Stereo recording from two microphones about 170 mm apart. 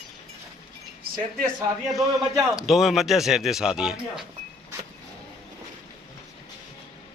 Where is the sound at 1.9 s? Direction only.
20° right (ahead or behind).